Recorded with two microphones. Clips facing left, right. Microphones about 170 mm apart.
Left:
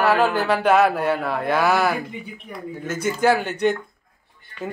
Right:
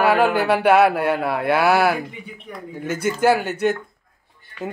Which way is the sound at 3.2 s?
5° right (ahead or behind).